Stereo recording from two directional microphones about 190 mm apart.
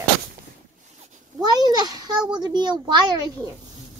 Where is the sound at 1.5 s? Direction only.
20° right (ahead or behind).